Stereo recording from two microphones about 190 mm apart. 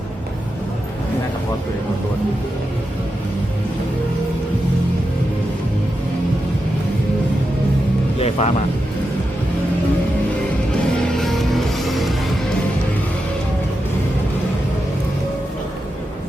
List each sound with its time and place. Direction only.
8.2 s speech: 30° left (ahead or behind)
10.9 s music: centre (ahead or behind)